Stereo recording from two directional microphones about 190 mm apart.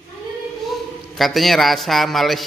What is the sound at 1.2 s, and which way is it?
A man's voice, centre (ahead or behind).